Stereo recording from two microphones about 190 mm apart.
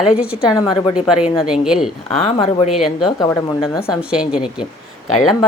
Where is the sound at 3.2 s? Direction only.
20° left (ahead or behind).